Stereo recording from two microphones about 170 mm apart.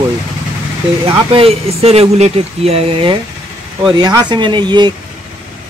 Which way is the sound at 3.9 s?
25° right (ahead or behind).